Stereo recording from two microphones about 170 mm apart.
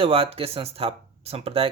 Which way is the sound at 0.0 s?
35° right (ahead or behind).